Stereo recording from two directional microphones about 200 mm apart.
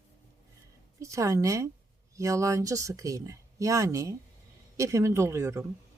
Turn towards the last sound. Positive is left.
turn(degrees=-15)  # may be behind; listen again after turning